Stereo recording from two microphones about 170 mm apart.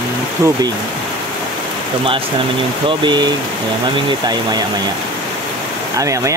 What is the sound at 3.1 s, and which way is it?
Speech, 25° right (ahead or behind).